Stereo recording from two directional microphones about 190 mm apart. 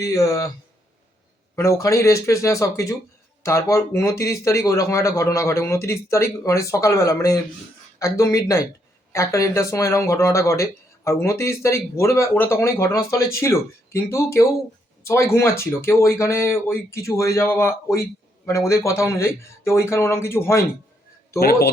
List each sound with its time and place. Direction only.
0.0 s speech: 15° left (ahead or behind)
1.5 s speech: 15° left (ahead or behind)
21.3 s a man's voice: 55° left (ahead or behind)